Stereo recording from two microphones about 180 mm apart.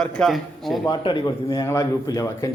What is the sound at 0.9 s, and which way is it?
A man's voice, 25° left (ahead or behind).